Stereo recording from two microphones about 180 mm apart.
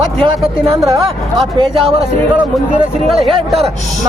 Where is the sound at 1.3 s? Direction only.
30° right (ahead or behind).